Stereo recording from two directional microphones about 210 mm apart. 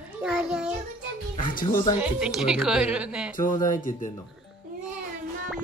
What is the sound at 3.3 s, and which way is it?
Speech, 40° left (ahead or behind).